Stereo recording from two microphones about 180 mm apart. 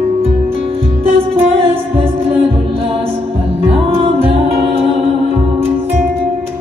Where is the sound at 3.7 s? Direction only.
30° right (ahead or behind).